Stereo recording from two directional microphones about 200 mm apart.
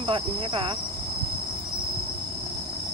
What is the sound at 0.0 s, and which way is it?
Cricket, 25° right (ahead or behind).